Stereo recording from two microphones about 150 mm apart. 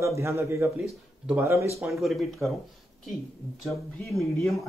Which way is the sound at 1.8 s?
Centre (ahead or behind).